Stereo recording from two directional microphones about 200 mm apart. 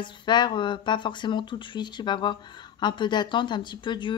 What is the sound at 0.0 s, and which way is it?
Speech, 25° left (ahead or behind).